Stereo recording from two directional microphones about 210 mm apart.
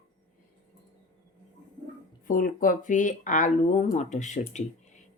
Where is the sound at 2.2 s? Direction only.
40° left (ahead or behind).